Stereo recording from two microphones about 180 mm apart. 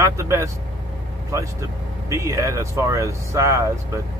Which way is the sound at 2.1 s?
15° right (ahead or behind).